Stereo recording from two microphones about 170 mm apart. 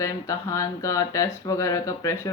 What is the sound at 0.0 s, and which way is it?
Speech, 20° left (ahead or behind).